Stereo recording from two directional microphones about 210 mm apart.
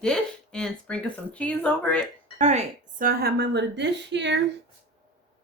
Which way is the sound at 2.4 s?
35° right (ahead or behind).